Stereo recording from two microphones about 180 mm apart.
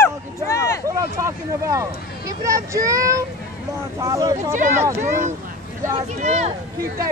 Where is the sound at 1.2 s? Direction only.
15° right (ahead or behind).